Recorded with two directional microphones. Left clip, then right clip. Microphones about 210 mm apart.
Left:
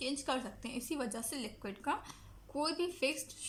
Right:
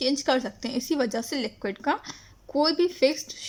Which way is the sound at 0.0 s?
45° right (ahead or behind).